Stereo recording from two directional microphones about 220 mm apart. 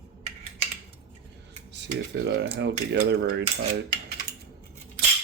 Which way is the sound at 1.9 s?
50° right (ahead or behind).